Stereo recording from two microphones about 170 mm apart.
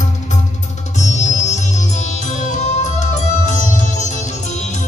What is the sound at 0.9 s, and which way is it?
Music, 45° left (ahead or behind).